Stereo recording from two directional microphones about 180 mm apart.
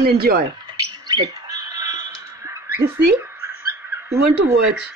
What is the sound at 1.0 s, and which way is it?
Bird, 20° right (ahead or behind).